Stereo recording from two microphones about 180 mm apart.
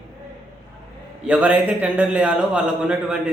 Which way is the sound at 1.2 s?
5° right (ahead or behind).